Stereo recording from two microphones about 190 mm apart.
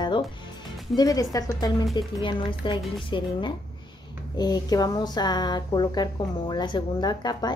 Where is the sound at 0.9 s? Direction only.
20° left (ahead or behind).